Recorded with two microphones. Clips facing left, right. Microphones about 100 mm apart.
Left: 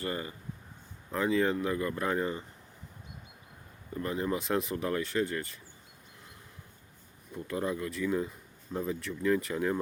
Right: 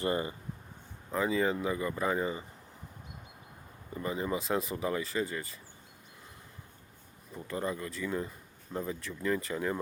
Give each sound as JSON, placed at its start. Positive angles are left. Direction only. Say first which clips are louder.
{"t": 0.0, "sound": "speech", "louder": "right 4 dB", "side_deg": -25}
{"t": 1.1, "sound": "speech", "louder": "left 1 dB", "side_deg": 0}
{"t": 3.9, "sound": "speech", "louder": "left 1 dB", "side_deg": -5}
{"t": 7.3, "sound": "speech", "louder": "left 2 dB", "side_deg": 0}